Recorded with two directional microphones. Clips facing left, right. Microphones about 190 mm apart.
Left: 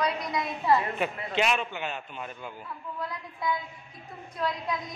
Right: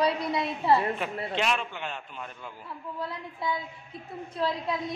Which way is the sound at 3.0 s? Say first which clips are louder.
Even; 25° right (ahead or behind).